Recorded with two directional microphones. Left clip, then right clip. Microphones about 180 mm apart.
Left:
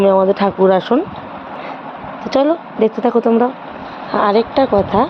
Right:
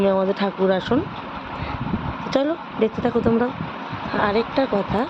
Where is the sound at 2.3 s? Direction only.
20° left (ahead or behind).